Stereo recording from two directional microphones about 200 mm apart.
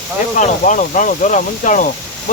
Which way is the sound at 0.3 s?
40° left (ahead or behind).